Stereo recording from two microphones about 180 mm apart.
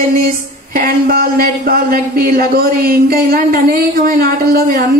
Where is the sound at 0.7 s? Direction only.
55° right (ahead or behind).